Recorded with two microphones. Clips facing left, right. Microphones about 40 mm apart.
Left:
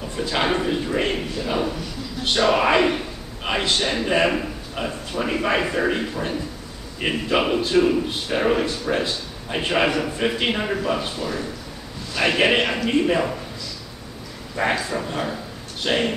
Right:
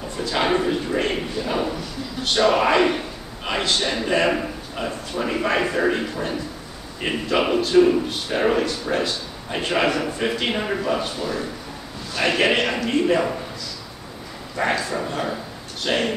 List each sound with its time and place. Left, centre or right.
0.2 s a man's voice: centre
9.0 s a man's voice: centre
14.6 s a man's voice: centre
15.0 s speech: centre
15.8 s a man's voice: centre